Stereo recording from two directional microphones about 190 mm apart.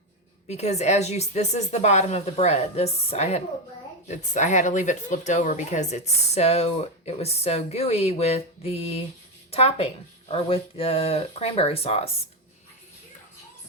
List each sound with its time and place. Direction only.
0.4 s speech: 35° left (ahead or behind)